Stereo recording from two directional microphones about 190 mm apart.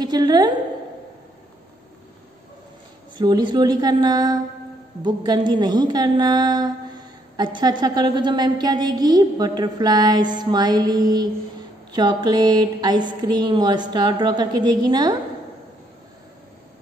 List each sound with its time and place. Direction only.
0.0 s a woman's voice: 20° right (ahead or behind)
3.2 s a woman's voice: 20° right (ahead or behind)